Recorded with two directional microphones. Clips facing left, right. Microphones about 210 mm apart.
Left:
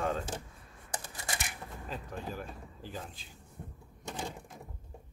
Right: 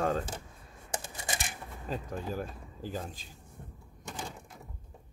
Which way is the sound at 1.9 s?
40° right (ahead or behind).